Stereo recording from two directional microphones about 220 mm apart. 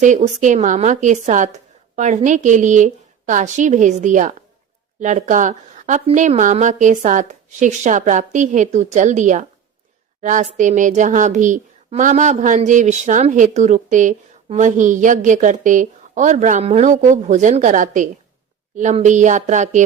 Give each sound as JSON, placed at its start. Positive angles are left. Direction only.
{"t": 0.0, "sound": "a woman's voice", "side_deg": -35}